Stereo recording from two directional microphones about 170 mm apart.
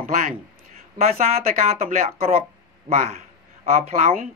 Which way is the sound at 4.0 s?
45° right (ahead or behind).